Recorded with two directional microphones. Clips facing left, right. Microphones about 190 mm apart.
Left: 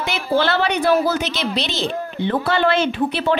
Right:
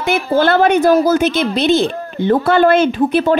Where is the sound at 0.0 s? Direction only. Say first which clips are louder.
Right 5 dB; 50° right (ahead or behind).